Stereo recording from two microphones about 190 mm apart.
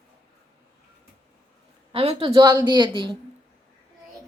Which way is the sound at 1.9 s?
30° right (ahead or behind).